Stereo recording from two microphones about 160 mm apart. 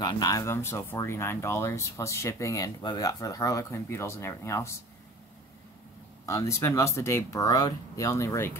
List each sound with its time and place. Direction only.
0.0 s speech: 25° left (ahead or behind)
6.2 s speech: 20° left (ahead or behind)